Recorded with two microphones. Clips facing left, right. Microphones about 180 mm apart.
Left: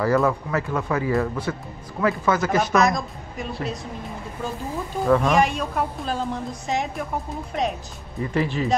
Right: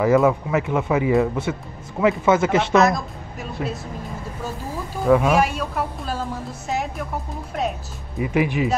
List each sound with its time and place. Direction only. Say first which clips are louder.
0.0 s speech: right 4 dB; 15° right (ahead or behind)
2.8 s a woman's voice: right 2 dB; 5° right (ahead or behind)
5.0 s a woman's voice: right 2 dB; 5° right (ahead or behind)
8.2 s speech: right 3 dB; 15° right (ahead or behind)